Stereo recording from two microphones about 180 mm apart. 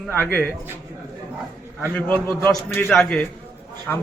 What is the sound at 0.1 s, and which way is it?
Speech, 10° left (ahead or behind).